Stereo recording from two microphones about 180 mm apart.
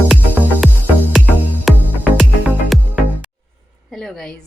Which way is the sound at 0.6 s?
Centre (ahead or behind).